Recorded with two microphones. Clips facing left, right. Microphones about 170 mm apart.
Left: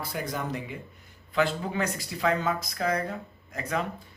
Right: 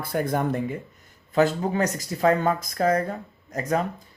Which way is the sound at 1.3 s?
40° right (ahead or behind).